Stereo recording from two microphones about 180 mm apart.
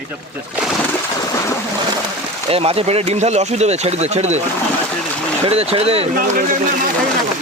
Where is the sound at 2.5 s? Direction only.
35° right (ahead or behind).